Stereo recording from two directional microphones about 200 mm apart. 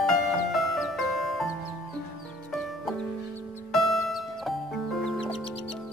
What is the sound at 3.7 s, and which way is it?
Music, centre (ahead or behind).